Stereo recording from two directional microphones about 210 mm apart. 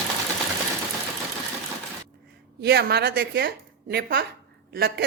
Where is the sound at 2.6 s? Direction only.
50° right (ahead or behind).